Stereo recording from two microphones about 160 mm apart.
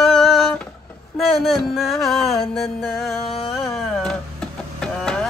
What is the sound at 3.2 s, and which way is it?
Music, 40° left (ahead or behind).